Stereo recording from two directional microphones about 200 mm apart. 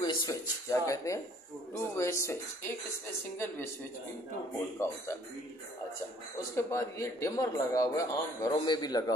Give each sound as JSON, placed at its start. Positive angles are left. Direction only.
{"t": 0.0, "sound": "speech", "side_deg": 15}
{"t": 4.7, "sound": "speech", "side_deg": 15}
{"t": 6.5, "sound": "speech", "side_deg": 15}